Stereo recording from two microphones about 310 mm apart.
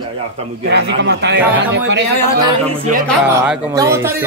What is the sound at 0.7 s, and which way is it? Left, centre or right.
Speech, right.